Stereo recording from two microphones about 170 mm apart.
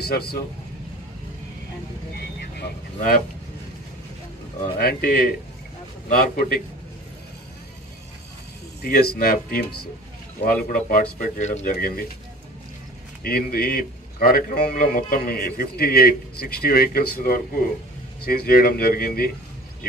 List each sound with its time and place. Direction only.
0.0 s speech: 70° left (ahead or behind)
2.1 s speech: 70° left (ahead or behind)
4.7 s a man's voice: 60° left (ahead or behind)
8.8 s a man's voice: 65° left (ahead or behind)
13.2 s a man's voice: 65° left (ahead or behind)